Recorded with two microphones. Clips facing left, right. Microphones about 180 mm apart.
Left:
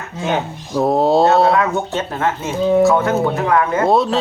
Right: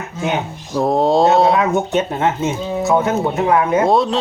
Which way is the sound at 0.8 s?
Centre (ahead or behind).